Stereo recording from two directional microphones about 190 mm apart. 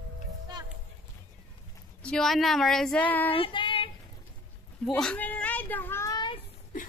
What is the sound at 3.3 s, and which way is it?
Female singing, 25° left (ahead or behind).